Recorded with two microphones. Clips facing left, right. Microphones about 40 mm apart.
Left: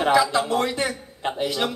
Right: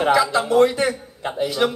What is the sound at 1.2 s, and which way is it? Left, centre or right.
Speech, left.